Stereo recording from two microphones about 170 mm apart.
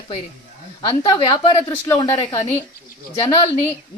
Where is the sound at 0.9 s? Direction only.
25° left (ahead or behind).